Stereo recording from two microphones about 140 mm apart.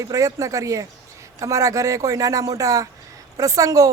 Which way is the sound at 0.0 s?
25° right (ahead or behind).